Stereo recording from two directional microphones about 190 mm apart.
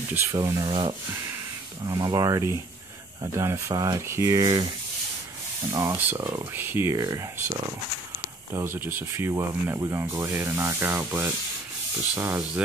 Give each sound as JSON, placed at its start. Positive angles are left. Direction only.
{"t": 0.1, "sound": "speech", "side_deg": -15}
{"t": 5.7, "sound": "speech", "side_deg": -15}
{"t": 8.7, "sound": "speech", "side_deg": -10}